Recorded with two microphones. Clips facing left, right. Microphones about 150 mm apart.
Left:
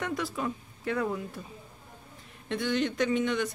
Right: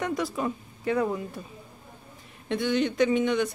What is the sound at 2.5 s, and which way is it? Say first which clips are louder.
A woman's voice: right 3 dB; centre (ahead or behind).